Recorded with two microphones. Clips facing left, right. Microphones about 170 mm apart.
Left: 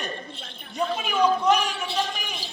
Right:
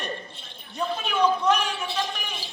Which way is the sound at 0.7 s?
10° left (ahead or behind).